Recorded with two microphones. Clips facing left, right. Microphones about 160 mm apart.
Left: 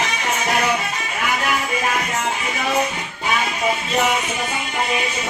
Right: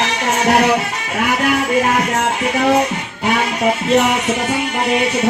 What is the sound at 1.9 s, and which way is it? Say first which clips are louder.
Music: right 6 dB; 70° right (ahead or behind).